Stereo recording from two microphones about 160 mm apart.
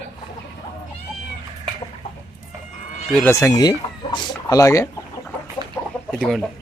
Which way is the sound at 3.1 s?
15° left (ahead or behind).